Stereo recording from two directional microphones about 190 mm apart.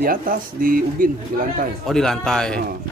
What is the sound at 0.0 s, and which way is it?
Speech, 45° right (ahead or behind).